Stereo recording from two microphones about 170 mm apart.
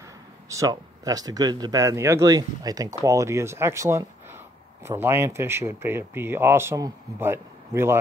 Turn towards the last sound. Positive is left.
turn(degrees=-15)  # may be behind; listen again after turning